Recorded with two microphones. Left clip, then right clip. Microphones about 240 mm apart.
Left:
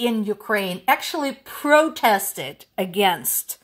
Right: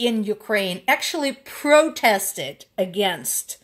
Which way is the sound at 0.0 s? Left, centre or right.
Left.